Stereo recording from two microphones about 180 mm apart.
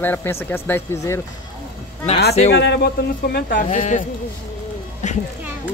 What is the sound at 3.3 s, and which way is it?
Speech, 50° left (ahead or behind).